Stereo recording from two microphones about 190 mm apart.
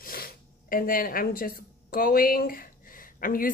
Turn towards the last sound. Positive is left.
turn(degrees=50)  # may be behind; listen again after turning